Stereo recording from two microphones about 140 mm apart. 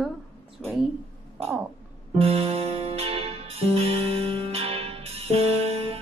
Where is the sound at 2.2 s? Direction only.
45° right (ahead or behind).